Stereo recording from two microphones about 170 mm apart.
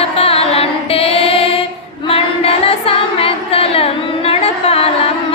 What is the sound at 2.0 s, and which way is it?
Female singing, 35° left (ahead or behind).